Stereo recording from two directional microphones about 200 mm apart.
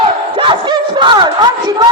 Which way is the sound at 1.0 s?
20° right (ahead or behind).